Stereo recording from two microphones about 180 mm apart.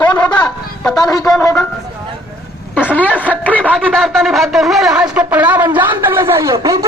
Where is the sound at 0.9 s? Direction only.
20° left (ahead or behind).